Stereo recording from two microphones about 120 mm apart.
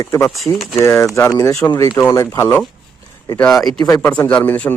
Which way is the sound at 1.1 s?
25° left (ahead or behind).